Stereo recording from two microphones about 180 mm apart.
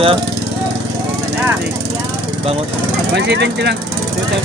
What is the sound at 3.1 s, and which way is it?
Speech, 70° right (ahead or behind).